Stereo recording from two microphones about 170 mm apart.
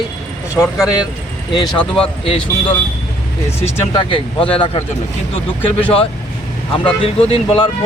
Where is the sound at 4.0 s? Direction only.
30° left (ahead or behind).